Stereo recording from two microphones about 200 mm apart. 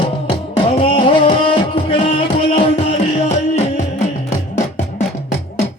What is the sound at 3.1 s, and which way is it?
Music, 35° left (ahead or behind).